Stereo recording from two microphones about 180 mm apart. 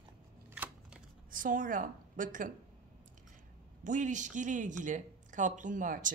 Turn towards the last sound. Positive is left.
turn(degrees=-45)  # may be behind; listen again after turning